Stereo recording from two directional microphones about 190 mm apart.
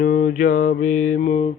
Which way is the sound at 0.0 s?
45° left (ahead or behind).